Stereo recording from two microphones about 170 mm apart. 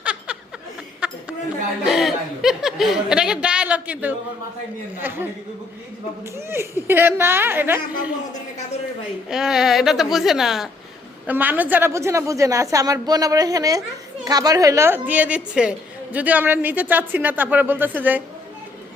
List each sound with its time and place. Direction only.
0.0 s chuckle: 5° right (ahead or behind)
1.0 s a sound: 5° right (ahead or behind)
1.8 s a woman's voice: centre (ahead or behind)
9.3 s a woman's voice: 5° right (ahead or behind)